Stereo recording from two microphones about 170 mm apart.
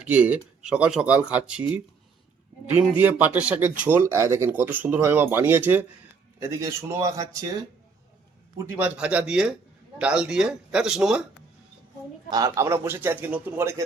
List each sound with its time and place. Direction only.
0.0 s speech: 10° right (ahead or behind)
3.0 s speech: 10° right (ahead or behind)
8.5 s a man's voice: 10° right (ahead or behind)
12.3 s speech: 20° right (ahead or behind)